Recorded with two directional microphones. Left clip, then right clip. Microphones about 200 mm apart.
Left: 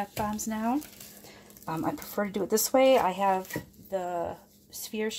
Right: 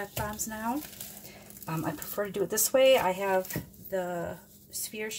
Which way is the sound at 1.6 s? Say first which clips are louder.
Left 3 dB; 35° left (ahead or behind).